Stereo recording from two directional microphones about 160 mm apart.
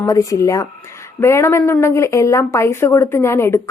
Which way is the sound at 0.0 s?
20° left (ahead or behind).